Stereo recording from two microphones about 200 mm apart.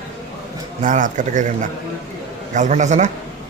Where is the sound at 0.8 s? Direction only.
40° right (ahead or behind).